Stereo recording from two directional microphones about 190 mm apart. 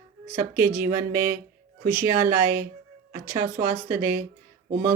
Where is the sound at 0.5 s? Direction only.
10° right (ahead or behind).